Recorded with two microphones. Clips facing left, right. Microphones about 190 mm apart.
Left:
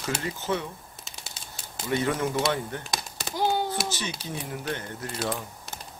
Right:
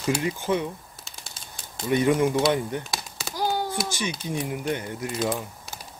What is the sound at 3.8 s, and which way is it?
Speech, 10° right (ahead or behind).